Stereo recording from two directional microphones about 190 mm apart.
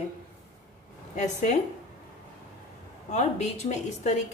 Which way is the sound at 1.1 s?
40° left (ahead or behind).